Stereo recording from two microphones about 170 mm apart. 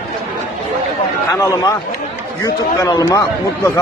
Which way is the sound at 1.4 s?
20° left (ahead or behind).